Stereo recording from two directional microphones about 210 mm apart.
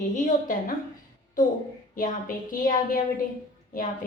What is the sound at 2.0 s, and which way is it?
Speech, 40° left (ahead or behind).